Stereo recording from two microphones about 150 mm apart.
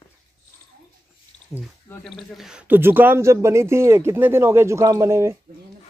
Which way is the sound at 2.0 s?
Centre (ahead or behind).